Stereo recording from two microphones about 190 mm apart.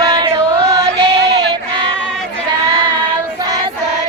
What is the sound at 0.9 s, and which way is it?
Music, 60° right (ahead or behind).